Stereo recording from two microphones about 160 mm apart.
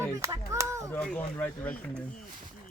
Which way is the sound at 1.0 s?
5° left (ahead or behind).